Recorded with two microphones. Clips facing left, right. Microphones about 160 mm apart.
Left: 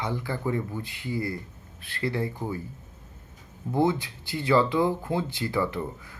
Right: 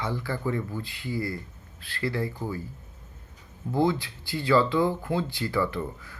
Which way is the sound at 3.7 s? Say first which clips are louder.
Even; 20° left (ahead or behind).